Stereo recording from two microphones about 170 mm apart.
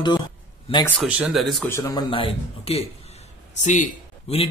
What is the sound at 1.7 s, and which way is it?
Speech, 20° left (ahead or behind).